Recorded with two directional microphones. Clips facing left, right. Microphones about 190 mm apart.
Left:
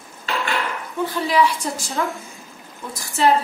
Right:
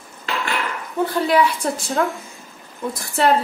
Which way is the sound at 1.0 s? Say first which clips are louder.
Right 2 dB; 60° right (ahead or behind).